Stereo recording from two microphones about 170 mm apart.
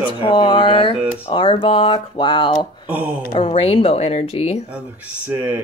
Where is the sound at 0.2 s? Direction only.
30° left (ahead or behind).